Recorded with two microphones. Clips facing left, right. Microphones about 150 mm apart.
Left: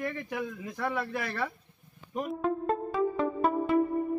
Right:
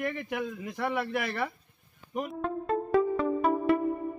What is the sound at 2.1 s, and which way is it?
Speech, 5° right (ahead or behind).